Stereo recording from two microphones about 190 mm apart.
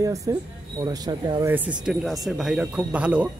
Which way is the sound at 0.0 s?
15° right (ahead or behind).